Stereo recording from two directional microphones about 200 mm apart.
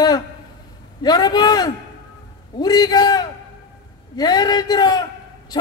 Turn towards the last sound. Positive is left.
turn(degrees=20)  # may be behind; listen again after turning